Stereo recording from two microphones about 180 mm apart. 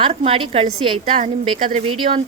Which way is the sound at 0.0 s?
35° right (ahead or behind).